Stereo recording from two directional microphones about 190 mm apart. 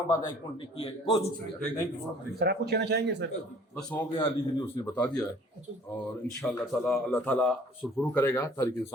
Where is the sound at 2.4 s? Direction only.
60° right (ahead or behind).